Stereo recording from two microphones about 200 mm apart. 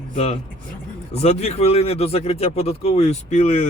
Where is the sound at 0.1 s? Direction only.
30° left (ahead or behind).